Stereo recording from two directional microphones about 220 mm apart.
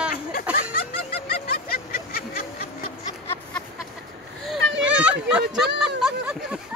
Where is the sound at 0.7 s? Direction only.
40° left (ahead or behind).